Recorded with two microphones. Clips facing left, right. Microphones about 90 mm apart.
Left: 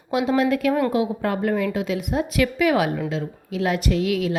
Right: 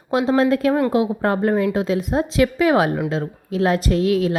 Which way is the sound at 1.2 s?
35° right (ahead or behind).